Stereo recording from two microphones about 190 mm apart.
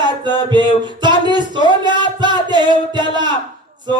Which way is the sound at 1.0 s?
25° right (ahead or behind).